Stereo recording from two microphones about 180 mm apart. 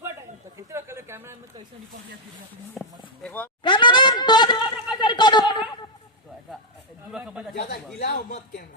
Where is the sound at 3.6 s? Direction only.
25° left (ahead or behind).